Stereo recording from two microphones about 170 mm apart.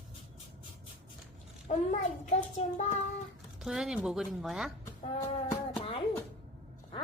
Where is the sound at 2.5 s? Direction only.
45° left (ahead or behind).